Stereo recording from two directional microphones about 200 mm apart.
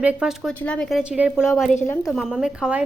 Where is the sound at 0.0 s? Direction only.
5° right (ahead or behind).